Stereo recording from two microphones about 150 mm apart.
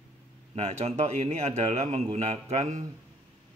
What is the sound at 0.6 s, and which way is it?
A man's voice, 45° right (ahead or behind).